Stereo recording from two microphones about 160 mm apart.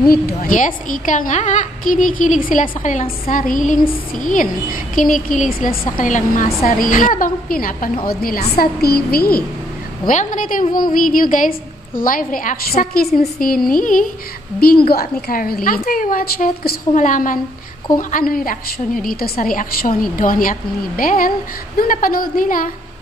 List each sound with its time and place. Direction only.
0.1 s a woman's voice: 65° left (ahead or behind)
10.0 s a woman's voice: 55° left (ahead or behind)
14.9 s a woman's voice: 70° left (ahead or behind)